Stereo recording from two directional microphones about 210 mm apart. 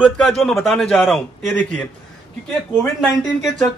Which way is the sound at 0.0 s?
Centre (ahead or behind).